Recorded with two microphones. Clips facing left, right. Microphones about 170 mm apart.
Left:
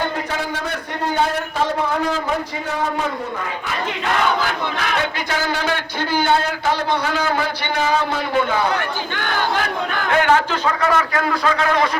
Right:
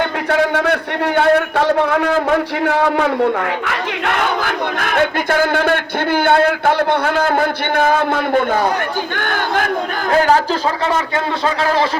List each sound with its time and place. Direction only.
0.3 s a man's voice: 65° right (ahead or behind)
3.7 s battle cry: 60° right (ahead or behind)
9.1 s speech: 50° right (ahead or behind)
10.1 s a man's voice: 35° right (ahead or behind)